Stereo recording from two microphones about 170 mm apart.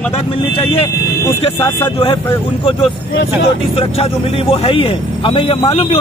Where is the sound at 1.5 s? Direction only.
15° left (ahead or behind).